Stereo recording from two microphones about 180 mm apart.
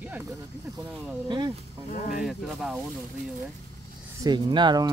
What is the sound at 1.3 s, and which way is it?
Speech, 25° right (ahead or behind).